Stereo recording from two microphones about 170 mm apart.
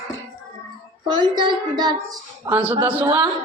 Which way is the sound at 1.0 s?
25° right (ahead or behind).